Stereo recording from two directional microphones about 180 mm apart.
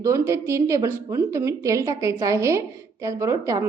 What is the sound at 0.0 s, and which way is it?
A woman's voice, 15° right (ahead or behind).